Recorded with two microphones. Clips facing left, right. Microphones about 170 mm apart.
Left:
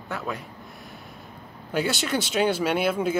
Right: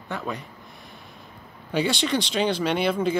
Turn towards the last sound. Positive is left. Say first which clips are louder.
# right 1 dB
turn(degrees=5)  # may be behind; listen again after turning